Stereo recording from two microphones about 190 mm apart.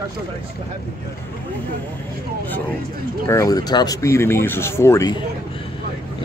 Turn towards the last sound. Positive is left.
turn(degrees=20)  # may be behind; listen again after turning